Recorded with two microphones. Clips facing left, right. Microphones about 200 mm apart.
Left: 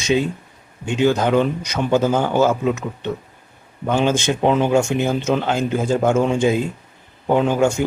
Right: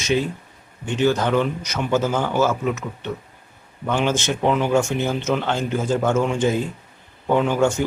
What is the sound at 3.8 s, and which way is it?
A man's voice, 15° left (ahead or behind).